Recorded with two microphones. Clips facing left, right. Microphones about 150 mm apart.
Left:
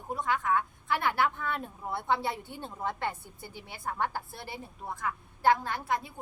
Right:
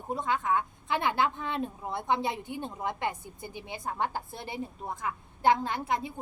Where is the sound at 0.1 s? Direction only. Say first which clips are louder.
Even; 25° right (ahead or behind).